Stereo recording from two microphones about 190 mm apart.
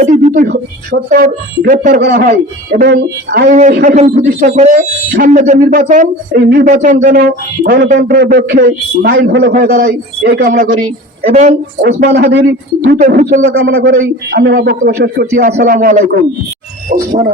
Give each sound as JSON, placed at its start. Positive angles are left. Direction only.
{"t": 0.0, "sound": "a sound", "side_deg": -40}
{"t": 1.1, "sound": "speech", "side_deg": -45}
{"t": 2.0, "sound": "speech", "side_deg": -55}
{"t": 3.5, "sound": "a man's voice", "side_deg": -40}
{"t": 6.7, "sound": "speech", "side_deg": -40}
{"t": 7.6, "sound": "speech", "side_deg": -55}
{"t": 9.8, "sound": "speech", "side_deg": -60}
{"t": 12.0, "sound": "speech", "side_deg": -65}
{"t": 12.8, "sound": "speech", "side_deg": -45}